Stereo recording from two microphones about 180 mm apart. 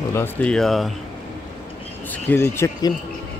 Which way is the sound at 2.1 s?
10° left (ahead or behind).